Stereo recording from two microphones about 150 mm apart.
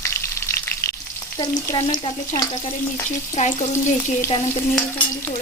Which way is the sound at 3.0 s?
50° left (ahead or behind).